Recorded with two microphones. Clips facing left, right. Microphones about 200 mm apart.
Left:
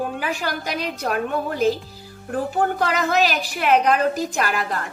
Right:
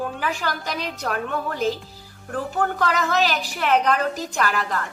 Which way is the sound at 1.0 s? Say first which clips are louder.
Left 3 dB; 30° left (ahead or behind).